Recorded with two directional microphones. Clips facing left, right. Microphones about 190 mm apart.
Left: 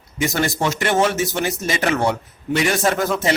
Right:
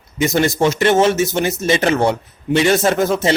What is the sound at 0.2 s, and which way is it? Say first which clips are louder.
Speech: right 5 dB; 20° right (ahead or behind).